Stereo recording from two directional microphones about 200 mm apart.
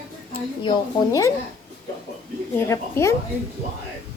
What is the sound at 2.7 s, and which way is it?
Speech, 15° left (ahead or behind).